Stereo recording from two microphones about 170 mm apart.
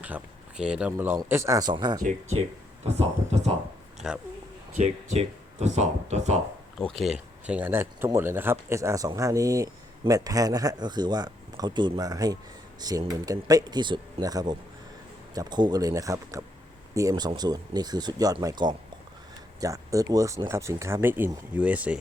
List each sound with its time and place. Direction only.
0.0 s speech: 5° right (ahead or behind); by 2.0 s 25° right (ahead or behind)
2.0 s speech: 50° right (ahead or behind)
4.8 s speech: 40° right (ahead or behind)
6.7 s speech: centre (ahead or behind)